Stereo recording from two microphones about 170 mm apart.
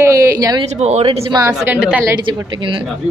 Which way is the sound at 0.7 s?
40° right (ahead or behind).